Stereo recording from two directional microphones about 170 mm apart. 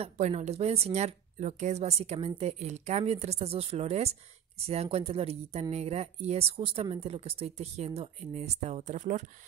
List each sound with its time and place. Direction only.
0.0 s a woman's voice: 40° right (ahead or behind)